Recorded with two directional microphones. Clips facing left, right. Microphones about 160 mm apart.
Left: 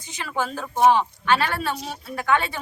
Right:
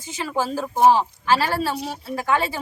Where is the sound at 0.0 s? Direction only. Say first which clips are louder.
Right 3 dB; 30° right (ahead or behind).